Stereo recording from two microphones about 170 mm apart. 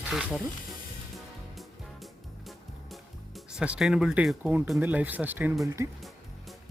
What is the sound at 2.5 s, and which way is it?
Speech, centre (ahead or behind).